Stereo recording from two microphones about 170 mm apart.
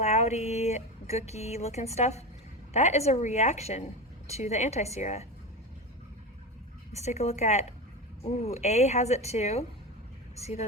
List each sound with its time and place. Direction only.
0.0 s speech: 40° left (ahead or behind)
6.9 s speech: 40° left (ahead or behind)